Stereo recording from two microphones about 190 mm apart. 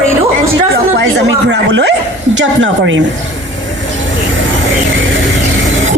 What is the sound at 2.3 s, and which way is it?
Speech, 80° right.